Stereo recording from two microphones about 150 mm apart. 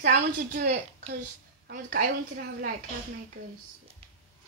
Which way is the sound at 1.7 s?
70° right (ahead or behind).